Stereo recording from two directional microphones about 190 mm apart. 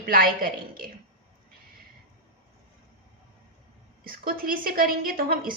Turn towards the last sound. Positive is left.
turn(degrees=-50)  # may be behind; listen again after turning